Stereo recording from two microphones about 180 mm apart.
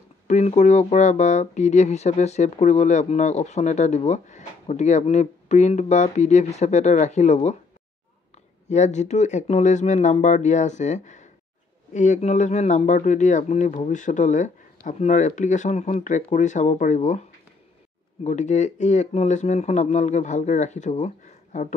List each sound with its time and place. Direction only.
0.3 s speech: 40° left (ahead or behind)
8.6 s a man's voice: 40° left (ahead or behind)
18.2 s speech: 40° left (ahead or behind)